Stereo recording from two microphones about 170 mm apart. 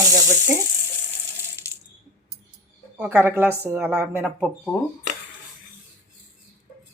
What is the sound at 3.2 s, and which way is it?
Speech, 10° right (ahead or behind).